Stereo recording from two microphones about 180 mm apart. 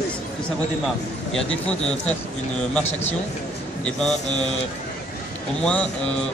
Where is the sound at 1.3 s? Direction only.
5° left (ahead or behind).